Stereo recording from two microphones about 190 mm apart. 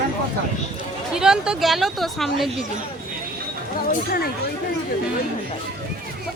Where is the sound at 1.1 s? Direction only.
5° right (ahead or behind).